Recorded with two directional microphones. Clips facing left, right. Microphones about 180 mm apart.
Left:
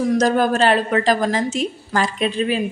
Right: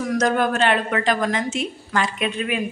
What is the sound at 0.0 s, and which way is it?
A woman's voice, 30° left (ahead or behind).